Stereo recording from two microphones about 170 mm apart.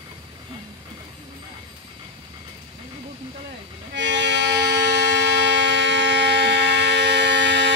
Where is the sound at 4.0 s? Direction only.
90° right.